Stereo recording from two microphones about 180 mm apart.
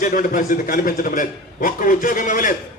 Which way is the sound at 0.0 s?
50° left (ahead or behind).